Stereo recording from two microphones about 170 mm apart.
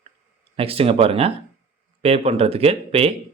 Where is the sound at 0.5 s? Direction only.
35° right (ahead or behind).